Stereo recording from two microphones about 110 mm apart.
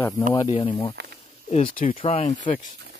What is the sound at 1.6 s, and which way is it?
Speech, 55° left (ahead or behind).